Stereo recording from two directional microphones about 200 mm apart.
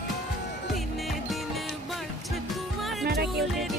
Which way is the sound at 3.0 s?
50° right (ahead or behind).